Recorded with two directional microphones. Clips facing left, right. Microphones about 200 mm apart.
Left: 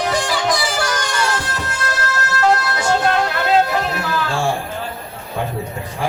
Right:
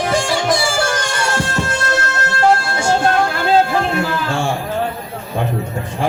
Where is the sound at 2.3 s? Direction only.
30° right (ahead or behind).